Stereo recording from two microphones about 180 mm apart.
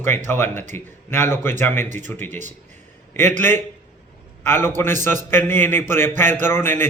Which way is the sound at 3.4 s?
10° left (ahead or behind).